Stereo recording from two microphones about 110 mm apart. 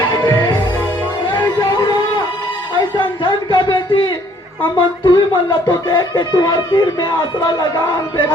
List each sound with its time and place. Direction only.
0.3 s music: 40° left (ahead or behind)
1.3 s a sound: 35° left (ahead or behind)
4.6 s speech: 40° left (ahead or behind)